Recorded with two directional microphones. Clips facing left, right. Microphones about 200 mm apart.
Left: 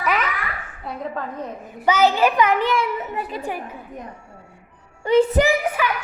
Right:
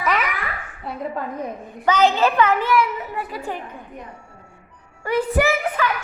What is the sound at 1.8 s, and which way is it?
A child's voice, 10° left (ahead or behind).